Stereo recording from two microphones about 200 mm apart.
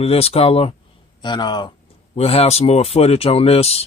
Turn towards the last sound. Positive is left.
turn(degrees=30)  # may be behind; listen again after turning